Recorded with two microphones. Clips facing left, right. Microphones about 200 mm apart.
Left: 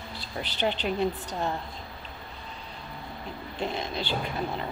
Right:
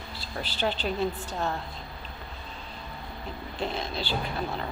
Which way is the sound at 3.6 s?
15° left (ahead or behind).